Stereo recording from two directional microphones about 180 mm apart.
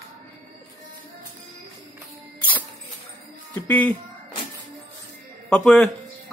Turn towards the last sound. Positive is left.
turn(degrees=5)  # may be behind; listen again after turning